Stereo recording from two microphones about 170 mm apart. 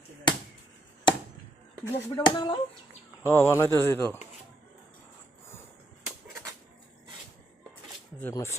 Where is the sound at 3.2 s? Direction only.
15° left (ahead or behind).